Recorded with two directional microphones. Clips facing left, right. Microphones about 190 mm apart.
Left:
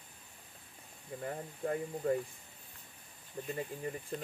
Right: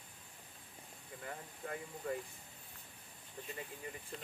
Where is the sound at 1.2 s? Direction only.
40° left (ahead or behind).